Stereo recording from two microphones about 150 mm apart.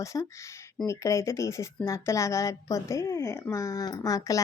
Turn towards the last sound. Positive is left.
turn(degrees=20)  # may be behind; listen again after turning